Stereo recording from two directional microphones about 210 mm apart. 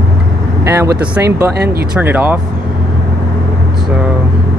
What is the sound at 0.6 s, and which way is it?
Speech, 15° right (ahead or behind).